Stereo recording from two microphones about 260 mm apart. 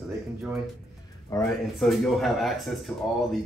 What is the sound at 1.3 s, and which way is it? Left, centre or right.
Speech, centre.